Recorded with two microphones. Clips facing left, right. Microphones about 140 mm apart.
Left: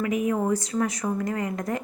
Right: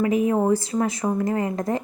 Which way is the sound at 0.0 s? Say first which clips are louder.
Right 4 dB; 30° right (ahead or behind).